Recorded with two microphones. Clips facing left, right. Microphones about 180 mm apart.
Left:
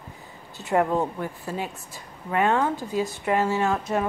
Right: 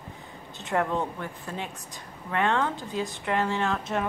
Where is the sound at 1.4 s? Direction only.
5° left (ahead or behind).